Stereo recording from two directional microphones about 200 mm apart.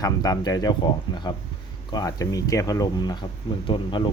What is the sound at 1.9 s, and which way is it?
Speech, 15° left (ahead or behind).